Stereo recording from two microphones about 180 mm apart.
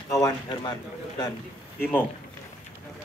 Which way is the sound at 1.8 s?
10° left (ahead or behind).